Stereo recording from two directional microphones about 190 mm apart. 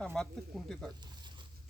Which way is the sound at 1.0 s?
25° right (ahead or behind).